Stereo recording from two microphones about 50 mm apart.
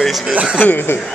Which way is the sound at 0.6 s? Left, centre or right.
Left.